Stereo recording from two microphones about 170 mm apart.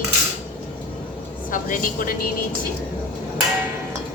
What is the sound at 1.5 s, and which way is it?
Speech, 55° left (ahead or behind).